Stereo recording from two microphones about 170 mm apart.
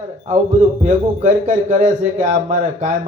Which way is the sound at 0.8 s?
45° right (ahead or behind).